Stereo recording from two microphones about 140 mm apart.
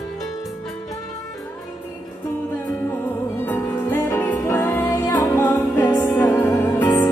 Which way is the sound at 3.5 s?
15° left (ahead or behind).